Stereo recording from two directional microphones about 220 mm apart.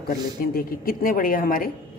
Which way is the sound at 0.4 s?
40° left (ahead or behind).